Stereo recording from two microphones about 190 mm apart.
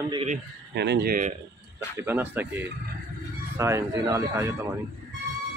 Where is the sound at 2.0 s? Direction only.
10° right (ahead or behind).